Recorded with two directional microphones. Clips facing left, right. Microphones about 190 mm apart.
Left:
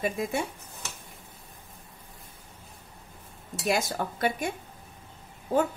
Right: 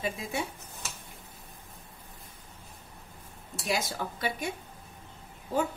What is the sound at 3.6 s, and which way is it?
Speech, 50° left (ahead or behind).